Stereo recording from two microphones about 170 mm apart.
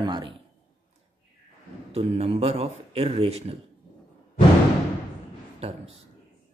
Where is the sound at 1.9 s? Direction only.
35° right (ahead or behind).